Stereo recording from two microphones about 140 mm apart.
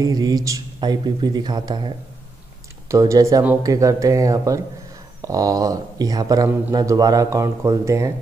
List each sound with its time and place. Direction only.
0.0 s speech: 25° right (ahead or behind)